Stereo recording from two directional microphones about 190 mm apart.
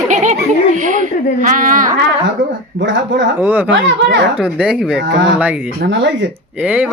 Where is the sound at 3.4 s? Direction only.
10° right (ahead or behind).